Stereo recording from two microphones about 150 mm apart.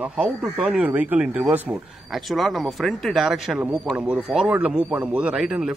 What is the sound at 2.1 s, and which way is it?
Speech, centre (ahead or behind).